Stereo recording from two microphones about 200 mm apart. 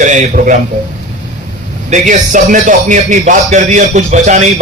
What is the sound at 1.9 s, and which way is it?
A man's voice, 40° right (ahead or behind).